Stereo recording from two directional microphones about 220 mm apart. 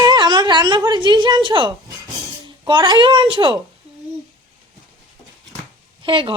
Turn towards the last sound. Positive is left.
turn(degrees=-25)  # may be behind; listen again after turning